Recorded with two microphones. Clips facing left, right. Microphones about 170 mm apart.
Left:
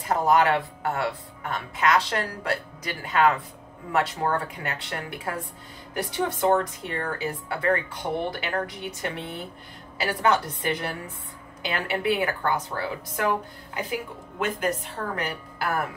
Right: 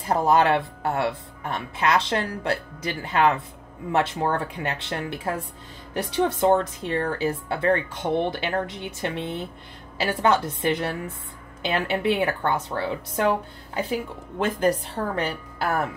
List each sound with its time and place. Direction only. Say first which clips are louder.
0.1 s a woman's voice: right 1 dB; 25° right (ahead or behind)